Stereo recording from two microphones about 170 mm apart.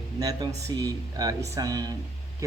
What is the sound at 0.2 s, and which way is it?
Speech, 25° right (ahead or behind).